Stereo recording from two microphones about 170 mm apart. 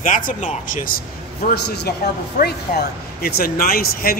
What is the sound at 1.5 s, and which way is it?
Speech, 75° left (ahead or behind).